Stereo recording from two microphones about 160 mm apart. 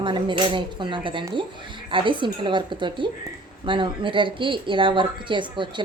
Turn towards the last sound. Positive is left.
turn(degrees=-30)  # may be behind; listen again after turning